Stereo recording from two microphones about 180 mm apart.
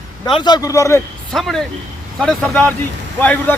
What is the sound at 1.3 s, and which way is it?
Speech, centre (ahead or behind).